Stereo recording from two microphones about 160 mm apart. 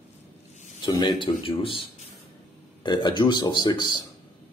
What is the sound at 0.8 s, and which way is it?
Speech, 30° left (ahead or behind).